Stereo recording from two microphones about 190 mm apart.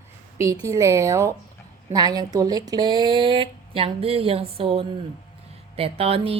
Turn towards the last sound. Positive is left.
turn(degrees=-30)  # may be behind; listen again after turning